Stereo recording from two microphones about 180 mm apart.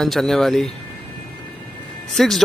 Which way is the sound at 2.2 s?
Centre (ahead or behind).